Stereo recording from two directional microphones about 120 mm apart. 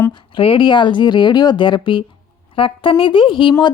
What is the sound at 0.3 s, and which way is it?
A woman's voice, 45° left (ahead or behind).